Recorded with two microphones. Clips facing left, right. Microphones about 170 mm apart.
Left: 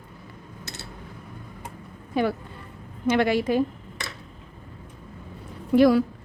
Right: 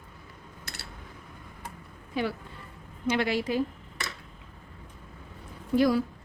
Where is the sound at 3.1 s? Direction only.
55° left (ahead or behind).